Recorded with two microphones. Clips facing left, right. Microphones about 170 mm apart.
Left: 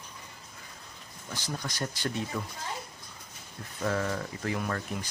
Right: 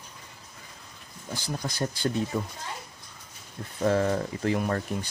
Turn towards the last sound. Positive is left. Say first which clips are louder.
# right 5 dB
turn(degrees=-30)  # may be behind; listen again after turning